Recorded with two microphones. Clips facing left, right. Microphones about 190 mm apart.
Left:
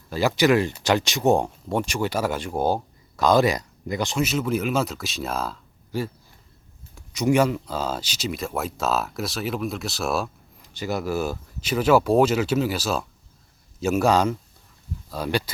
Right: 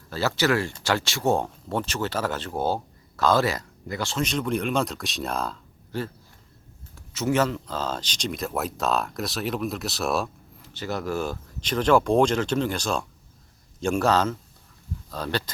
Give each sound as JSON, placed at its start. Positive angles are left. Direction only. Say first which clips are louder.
{"t": 0.1, "sound": "speech", "louder": "left 4 dB", "side_deg": 15}
{"t": 4.2, "sound": "speech", "louder": "left 1 dB", "side_deg": 5}
{"t": 10.6, "sound": "speech", "louder": "left 3 dB", "side_deg": 10}